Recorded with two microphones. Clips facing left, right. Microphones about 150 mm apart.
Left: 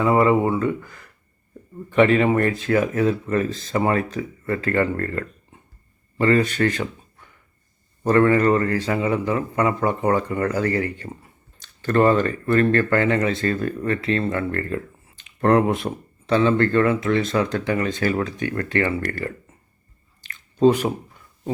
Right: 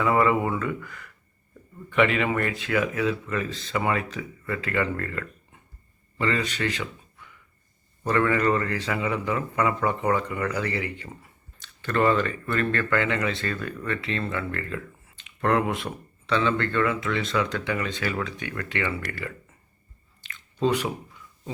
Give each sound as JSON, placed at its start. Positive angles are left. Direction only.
{"t": 0.0, "sound": "speech", "side_deg": 30}
{"t": 8.0, "sound": "speech", "side_deg": 35}
{"t": 20.2, "sound": "drip", "side_deg": 40}